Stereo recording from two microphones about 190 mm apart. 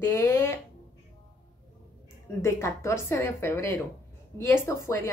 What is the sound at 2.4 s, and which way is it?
Speech, 15° left (ahead or behind).